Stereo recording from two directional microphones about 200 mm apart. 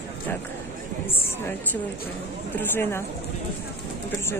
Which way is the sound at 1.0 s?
10° left (ahead or behind).